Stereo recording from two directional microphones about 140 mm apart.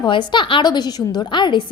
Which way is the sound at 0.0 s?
35° left (ahead or behind).